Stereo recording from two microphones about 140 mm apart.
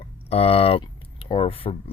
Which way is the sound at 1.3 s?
40° left (ahead or behind).